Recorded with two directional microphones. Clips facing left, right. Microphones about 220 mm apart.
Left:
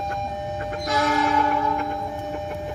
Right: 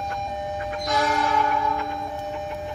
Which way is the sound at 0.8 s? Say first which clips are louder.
Left 2 dB; centre (ahead or behind).